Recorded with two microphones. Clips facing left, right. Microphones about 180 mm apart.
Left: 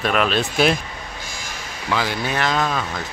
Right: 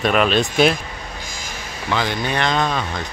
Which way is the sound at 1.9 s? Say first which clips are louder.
Right 1 dB; 5° left (ahead or behind).